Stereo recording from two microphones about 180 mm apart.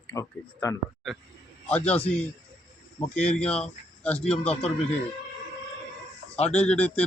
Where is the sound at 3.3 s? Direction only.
5° left (ahead or behind).